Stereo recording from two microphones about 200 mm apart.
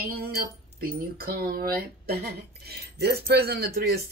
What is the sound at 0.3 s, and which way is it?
A woman's voice, 50° right (ahead or behind).